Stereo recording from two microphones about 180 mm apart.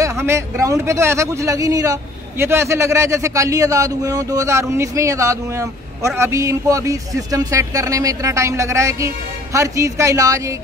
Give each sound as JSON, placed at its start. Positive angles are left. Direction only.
{"t": 0.0, "sound": "a man's voice", "side_deg": -15}